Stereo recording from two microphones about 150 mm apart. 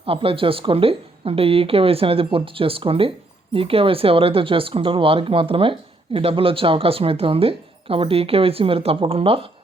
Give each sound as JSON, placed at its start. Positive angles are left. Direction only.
{"t": 0.0, "sound": "speech", "side_deg": -40}